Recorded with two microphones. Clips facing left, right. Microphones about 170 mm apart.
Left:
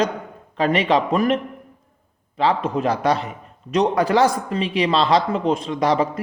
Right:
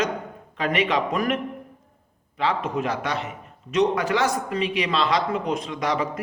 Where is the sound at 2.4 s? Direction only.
30° left (ahead or behind).